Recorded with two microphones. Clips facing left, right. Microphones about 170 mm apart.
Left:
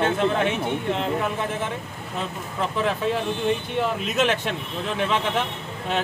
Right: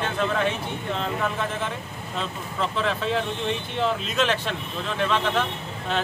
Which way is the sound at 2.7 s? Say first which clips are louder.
Left 4 dB; 10° left (ahead or behind).